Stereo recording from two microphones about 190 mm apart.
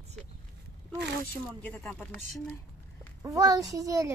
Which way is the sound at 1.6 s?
10° left (ahead or behind).